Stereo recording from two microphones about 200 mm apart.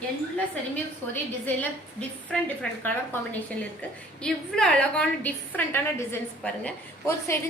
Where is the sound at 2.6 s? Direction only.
10° left (ahead or behind).